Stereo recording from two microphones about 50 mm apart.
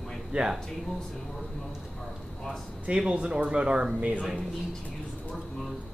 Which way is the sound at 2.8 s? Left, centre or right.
Right.